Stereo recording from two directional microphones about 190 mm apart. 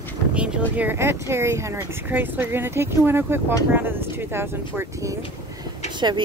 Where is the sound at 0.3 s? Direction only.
5° right (ahead or behind).